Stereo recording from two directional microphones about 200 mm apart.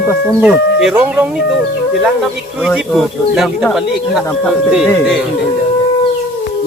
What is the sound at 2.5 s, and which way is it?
Speech, 5° right (ahead or behind).